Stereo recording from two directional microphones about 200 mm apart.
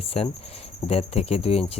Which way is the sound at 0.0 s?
30° left (ahead or behind).